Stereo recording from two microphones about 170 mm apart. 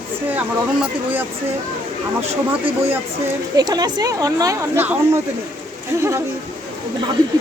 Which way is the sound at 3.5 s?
25° right (ahead or behind).